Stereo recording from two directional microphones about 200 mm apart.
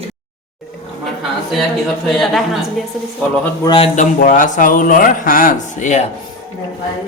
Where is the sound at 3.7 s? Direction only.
30° left (ahead or behind).